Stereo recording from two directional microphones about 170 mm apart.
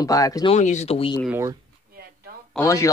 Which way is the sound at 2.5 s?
20° left (ahead or behind).